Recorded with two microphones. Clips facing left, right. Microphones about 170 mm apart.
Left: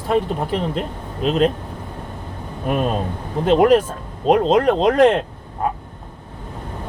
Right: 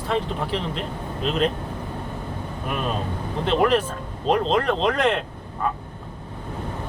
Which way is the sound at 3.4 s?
45° left (ahead or behind).